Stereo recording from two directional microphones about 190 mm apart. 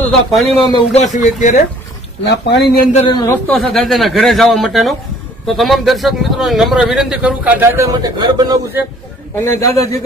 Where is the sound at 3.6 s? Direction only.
Centre (ahead or behind); by 8.6 s 20° right (ahead or behind).